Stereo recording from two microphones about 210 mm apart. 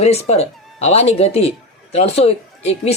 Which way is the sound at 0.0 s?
30° left (ahead or behind).